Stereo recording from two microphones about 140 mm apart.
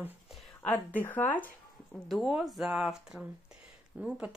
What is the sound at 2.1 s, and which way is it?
Speech, centre (ahead or behind).